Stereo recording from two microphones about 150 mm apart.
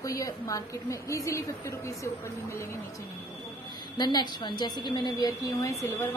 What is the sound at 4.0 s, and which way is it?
A woman's voice, 30° left (ahead or behind).